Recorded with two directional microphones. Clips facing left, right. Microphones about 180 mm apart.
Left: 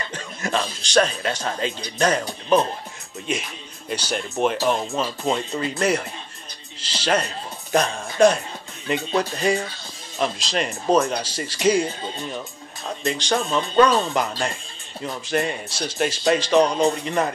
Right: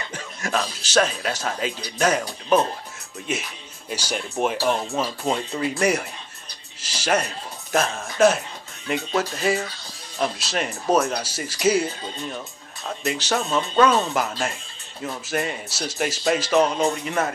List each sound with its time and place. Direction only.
0.1 s speech: 5° right (ahead or behind)
3.9 s a man's voice: 10° right (ahead or behind)